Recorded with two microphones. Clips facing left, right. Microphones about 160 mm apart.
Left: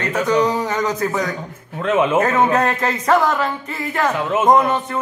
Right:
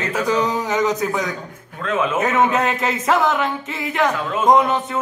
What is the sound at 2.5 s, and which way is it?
Speech, centre (ahead or behind).